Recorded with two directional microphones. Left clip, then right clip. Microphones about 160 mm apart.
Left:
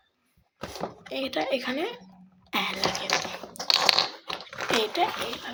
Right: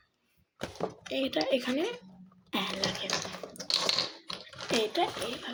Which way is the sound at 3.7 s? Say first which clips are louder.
Left 7 dB; 25° left (ahead or behind).